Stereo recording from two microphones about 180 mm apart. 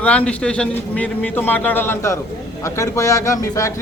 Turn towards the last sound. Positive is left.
turn(degrees=15)  # may be behind; listen again after turning